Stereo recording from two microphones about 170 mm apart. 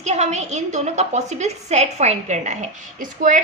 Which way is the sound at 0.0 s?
40° right (ahead or behind).